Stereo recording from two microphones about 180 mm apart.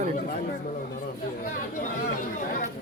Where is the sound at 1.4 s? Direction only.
45° left (ahead or behind).